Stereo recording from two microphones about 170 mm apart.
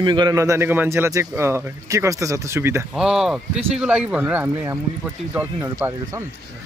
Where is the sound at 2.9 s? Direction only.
5° right (ahead or behind).